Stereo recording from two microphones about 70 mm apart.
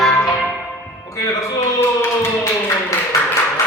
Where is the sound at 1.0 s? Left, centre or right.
Left.